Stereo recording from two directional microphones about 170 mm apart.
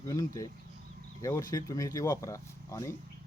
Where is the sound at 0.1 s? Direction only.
20° left (ahead or behind).